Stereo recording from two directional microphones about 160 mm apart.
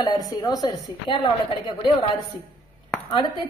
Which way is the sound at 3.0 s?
30° left (ahead or behind).